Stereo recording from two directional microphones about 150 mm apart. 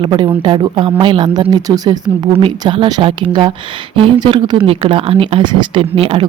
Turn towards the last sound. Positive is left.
turn(degrees=-40)  # may be behind; listen again after turning